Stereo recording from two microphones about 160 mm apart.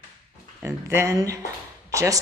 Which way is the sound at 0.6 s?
15° right (ahead or behind).